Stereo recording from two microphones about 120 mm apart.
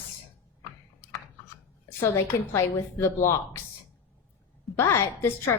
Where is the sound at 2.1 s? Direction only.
25° left (ahead or behind).